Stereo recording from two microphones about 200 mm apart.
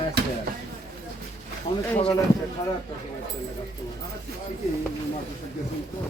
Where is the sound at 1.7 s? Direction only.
25° left (ahead or behind).